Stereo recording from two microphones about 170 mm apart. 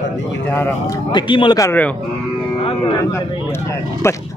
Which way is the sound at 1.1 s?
30° left (ahead or behind).